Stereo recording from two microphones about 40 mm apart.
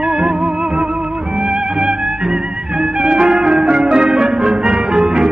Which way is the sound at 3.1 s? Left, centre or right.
Centre.